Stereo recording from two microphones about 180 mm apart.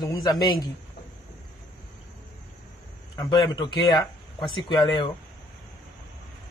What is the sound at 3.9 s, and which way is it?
Speech, centre (ahead or behind).